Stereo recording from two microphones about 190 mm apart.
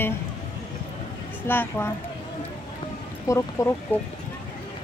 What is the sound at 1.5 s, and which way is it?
Speech, 10° left (ahead or behind).